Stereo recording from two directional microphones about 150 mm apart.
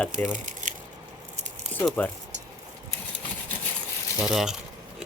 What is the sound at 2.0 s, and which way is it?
Speech, 10° left (ahead or behind).